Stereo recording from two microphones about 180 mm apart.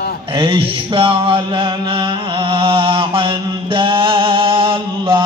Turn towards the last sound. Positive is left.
turn(degrees=-30)  # may be behind; listen again after turning